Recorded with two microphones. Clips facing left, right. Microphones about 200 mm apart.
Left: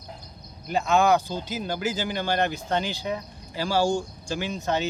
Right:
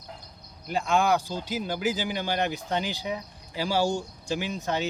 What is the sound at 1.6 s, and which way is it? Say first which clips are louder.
Speech: even; 10° right (ahead or behind).